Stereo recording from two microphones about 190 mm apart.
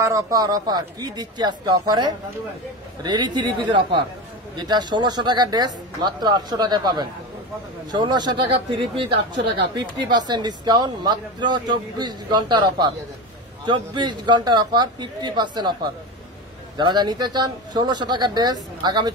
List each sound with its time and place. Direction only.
0.0 s speech: 20° right (ahead or behind)